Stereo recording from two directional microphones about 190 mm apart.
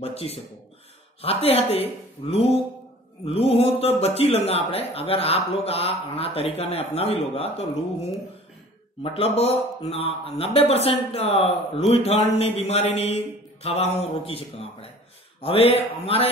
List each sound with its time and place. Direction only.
0.0 s speech: 30° left (ahead or behind)